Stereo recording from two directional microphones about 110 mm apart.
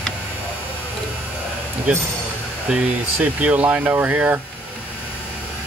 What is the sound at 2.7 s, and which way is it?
Speech, 10° right (ahead or behind).